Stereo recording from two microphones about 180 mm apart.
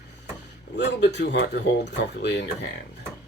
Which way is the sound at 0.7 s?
75° left (ahead or behind).